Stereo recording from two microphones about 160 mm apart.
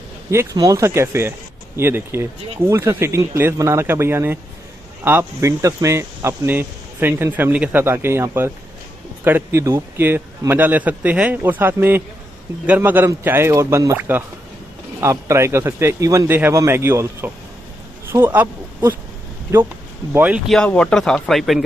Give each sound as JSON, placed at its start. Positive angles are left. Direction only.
{"t": 0.3, "sound": "speech", "side_deg": -15}
{"t": 20.1, "sound": "speech", "side_deg": -10}
{"t": 20.4, "sound": "speech", "side_deg": 5}